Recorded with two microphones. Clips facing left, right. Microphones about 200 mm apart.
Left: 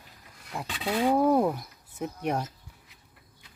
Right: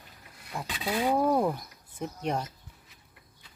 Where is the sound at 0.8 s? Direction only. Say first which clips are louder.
Left 3 dB; 10° right (ahead or behind).